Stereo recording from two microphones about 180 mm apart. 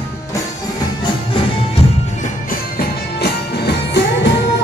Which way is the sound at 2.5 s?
60° left (ahead or behind).